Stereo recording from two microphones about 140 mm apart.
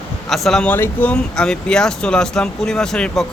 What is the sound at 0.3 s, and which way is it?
Speech, centre (ahead or behind).